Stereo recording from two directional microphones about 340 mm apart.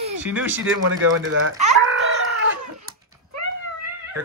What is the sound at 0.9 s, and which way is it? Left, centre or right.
Speech, right.